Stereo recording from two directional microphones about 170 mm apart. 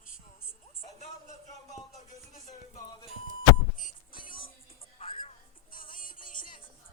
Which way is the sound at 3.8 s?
55° left (ahead or behind).